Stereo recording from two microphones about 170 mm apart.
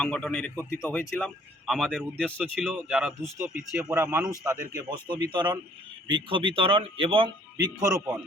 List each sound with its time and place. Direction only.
0.0 s speech: 5° left (ahead or behind)
3.8 s a man's voice: 15° right (ahead or behind); by 7.3 s 30° right (ahead or behind)
7.5 s a man's voice: 20° right (ahead or behind)